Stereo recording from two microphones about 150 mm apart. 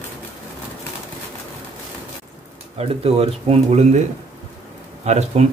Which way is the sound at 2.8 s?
40° right (ahead or behind).